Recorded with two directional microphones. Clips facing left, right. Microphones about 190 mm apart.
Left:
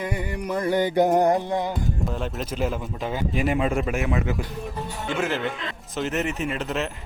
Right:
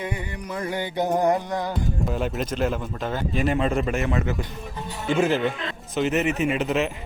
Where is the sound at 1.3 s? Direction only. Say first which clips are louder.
Left 1 dB; 30° left (ahead or behind).